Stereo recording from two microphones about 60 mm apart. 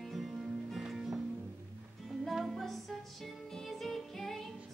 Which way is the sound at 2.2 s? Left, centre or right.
Centre.